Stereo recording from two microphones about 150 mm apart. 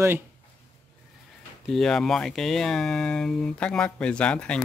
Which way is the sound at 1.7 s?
5° left (ahead or behind).